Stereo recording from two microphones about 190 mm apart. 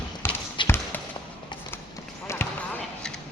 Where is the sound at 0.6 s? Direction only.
25° left (ahead or behind).